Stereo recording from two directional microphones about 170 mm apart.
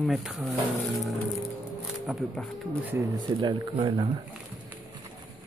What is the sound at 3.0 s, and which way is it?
Speech, 25° right (ahead or behind).